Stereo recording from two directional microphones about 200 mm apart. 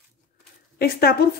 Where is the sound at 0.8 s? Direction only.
50° left (ahead or behind).